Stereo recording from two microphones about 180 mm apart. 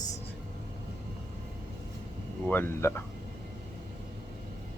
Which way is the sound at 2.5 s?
10° left (ahead or behind).